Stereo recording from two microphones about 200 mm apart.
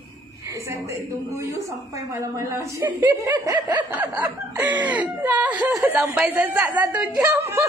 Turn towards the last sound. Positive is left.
turn(degrees=-5)  # may be behind; listen again after turning